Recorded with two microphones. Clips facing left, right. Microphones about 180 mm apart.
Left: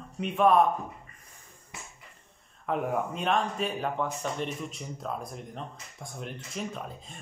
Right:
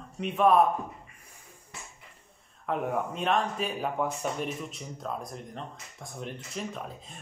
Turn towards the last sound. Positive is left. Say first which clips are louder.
# even
turn(degrees=0)  # may be behind; listen again after turning